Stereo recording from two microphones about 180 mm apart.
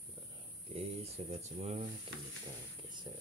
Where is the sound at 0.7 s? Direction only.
35° right (ahead or behind).